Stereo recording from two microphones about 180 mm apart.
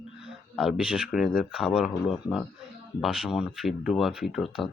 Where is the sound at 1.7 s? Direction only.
30° left (ahead or behind).